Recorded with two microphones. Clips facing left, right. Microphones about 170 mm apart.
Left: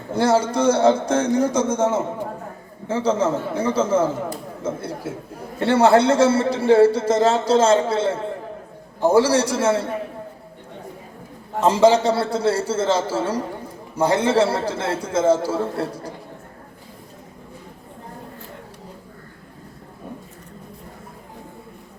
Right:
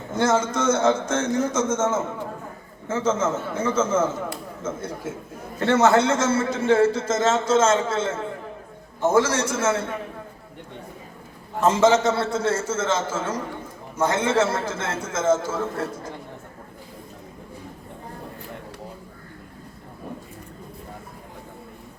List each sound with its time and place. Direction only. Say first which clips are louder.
0.1 s a man's voice: left 3 dB; 35° left (ahead or behind)
11.7 s a man's voice: left 3 dB; 35° left (ahead or behind)